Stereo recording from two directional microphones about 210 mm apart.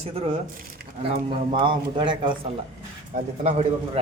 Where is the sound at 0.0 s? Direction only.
30° right (ahead or behind).